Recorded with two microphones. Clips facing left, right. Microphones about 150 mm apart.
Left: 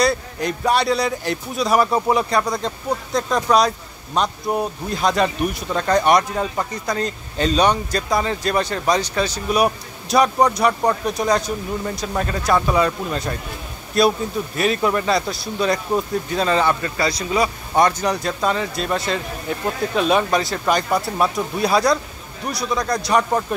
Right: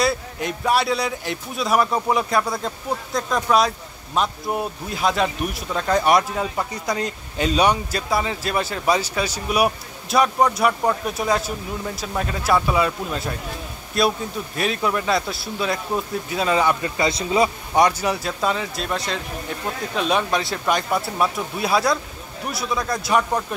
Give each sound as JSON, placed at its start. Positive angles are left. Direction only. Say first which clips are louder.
{"t": 0.0, "sound": "speech", "louder": "left 3 dB", "side_deg": -5}
{"t": 17.7, "sound": "speech", "louder": "left 1 dB", "side_deg": -10}